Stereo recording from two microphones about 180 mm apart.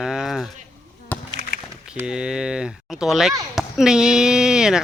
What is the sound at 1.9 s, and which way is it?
Speech, 5° right (ahead or behind).